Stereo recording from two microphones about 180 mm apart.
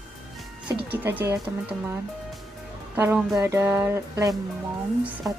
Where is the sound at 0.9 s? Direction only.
10° right (ahead or behind).